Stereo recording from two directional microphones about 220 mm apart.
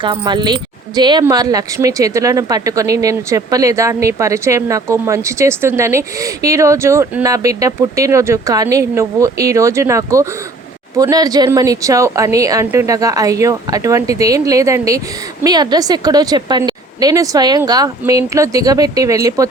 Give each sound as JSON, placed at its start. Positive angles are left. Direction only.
{"t": 0.0, "sound": "speech", "side_deg": -20}